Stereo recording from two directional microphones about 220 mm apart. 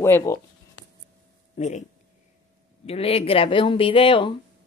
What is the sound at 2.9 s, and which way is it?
Speech, 25° left (ahead or behind).